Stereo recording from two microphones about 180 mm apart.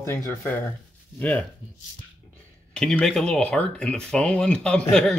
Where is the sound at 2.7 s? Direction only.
5° left (ahead or behind).